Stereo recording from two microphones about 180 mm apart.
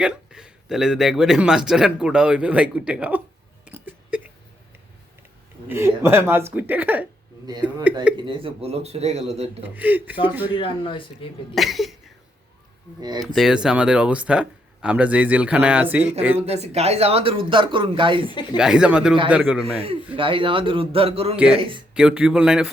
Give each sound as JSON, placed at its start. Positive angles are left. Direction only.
{"t": 0.0, "sound": "a man's voice", "side_deg": -5}
{"t": 3.7, "sound": "hiccup", "side_deg": -10}
{"t": 5.6, "sound": "speech", "side_deg": -15}
{"t": 8.1, "sound": "speech", "side_deg": -30}
{"t": 9.6, "sound": "speech", "side_deg": -10}
{"t": 10.5, "sound": "speech", "side_deg": 30}
{"t": 11.5, "sound": "a man's voice", "side_deg": 0}
{"t": 13.0, "sound": "speech", "side_deg": -20}
{"t": 13.2, "sound": "speech", "side_deg": 0}
{"t": 16.5, "sound": "speech", "side_deg": -35}
{"t": 18.5, "sound": "a man's voice", "side_deg": -5}
{"t": 20.1, "sound": "speech", "side_deg": -30}
{"t": 21.9, "sound": "a man's voice", "side_deg": -5}